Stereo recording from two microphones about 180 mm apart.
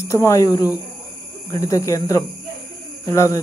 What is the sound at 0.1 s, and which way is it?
Speech, 15° left (ahead or behind).